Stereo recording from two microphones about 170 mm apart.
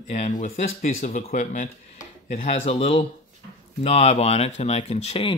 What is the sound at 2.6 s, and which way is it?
Speech, 35° left (ahead or behind).